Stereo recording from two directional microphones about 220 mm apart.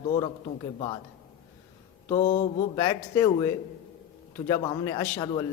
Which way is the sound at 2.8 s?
15° left (ahead or behind).